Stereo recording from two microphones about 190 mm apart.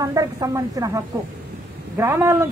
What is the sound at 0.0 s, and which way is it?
Speech, 20° right (ahead or behind).